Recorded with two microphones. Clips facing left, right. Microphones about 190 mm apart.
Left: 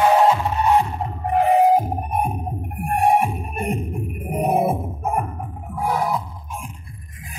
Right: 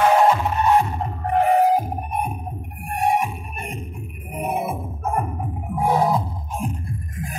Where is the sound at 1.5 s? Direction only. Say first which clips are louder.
Left 4 dB; 20° left (ahead or behind).